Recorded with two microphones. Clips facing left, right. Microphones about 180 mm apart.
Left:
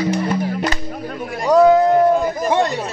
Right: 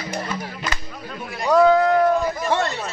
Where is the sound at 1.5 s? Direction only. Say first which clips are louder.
Left 4 dB; 20° left (ahead or behind).